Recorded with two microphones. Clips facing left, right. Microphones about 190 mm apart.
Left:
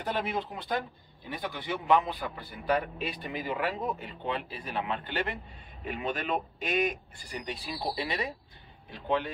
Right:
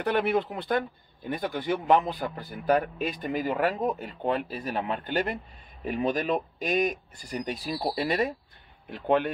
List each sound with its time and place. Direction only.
0.0 s speech: 65° right (ahead or behind)